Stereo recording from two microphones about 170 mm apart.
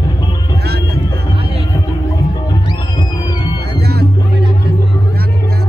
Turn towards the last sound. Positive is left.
turn(degrees=-65)  # may be behind; listen again after turning